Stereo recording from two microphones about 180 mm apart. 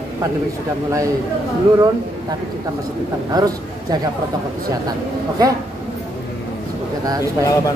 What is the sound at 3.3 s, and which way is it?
Speech, 20° right (ahead or behind).